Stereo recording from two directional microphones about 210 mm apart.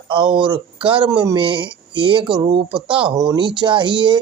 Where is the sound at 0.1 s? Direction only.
25° right (ahead or behind).